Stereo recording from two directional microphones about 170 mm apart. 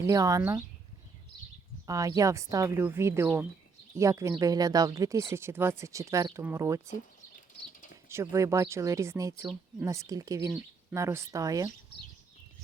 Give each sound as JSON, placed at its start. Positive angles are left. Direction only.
{"t": 0.0, "sound": "speech", "side_deg": -20}
{"t": 1.9, "sound": "speech", "side_deg": -20}
{"t": 6.9, "sound": "patter", "side_deg": 50}
{"t": 8.1, "sound": "speech", "side_deg": -15}